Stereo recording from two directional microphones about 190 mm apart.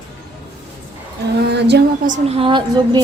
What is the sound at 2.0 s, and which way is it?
Speech, 40° right (ahead or behind).